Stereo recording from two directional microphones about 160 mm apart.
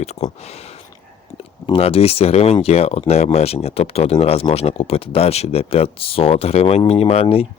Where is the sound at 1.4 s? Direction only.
35° left (ahead or behind).